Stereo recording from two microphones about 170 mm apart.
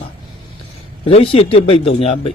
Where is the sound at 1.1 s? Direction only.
35° left (ahead or behind).